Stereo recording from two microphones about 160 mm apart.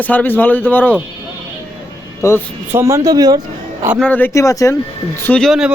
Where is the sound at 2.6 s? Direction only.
15° right (ahead or behind).